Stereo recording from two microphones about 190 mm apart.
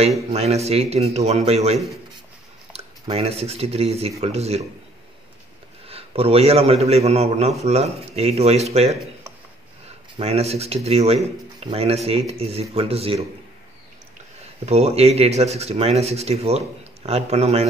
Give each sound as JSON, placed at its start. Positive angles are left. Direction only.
{"t": 0.3, "sound": "speech", "side_deg": -35}
{"t": 5.9, "sound": "a man's voice", "side_deg": -30}
{"t": 10.1, "sound": "speech", "side_deg": -30}
{"t": 14.7, "sound": "speech", "side_deg": -35}